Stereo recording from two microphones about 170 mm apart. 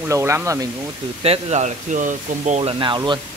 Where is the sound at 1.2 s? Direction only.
40° right (ahead or behind).